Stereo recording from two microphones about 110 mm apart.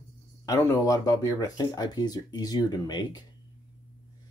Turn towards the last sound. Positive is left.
turn(degrees=40)  # may be behind; listen again after turning